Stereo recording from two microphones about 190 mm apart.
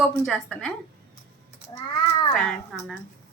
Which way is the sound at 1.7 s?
20° left (ahead or behind).